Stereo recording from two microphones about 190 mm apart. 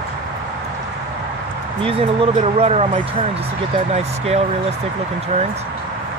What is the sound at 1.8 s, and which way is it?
Speech, 30° right (ahead or behind).